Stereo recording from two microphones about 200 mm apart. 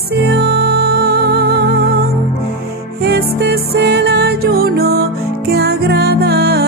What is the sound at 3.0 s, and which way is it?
Music, 55° right (ahead or behind).